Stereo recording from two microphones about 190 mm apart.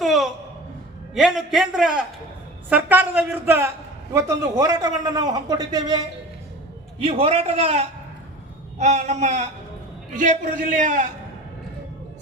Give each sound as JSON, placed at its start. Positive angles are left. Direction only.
{"t": 0.0, "sound": "a sound", "side_deg": 0}
{"t": 1.1, "sound": "a man's voice", "side_deg": 0}
{"t": 7.0, "sound": "a man's voice", "side_deg": -30}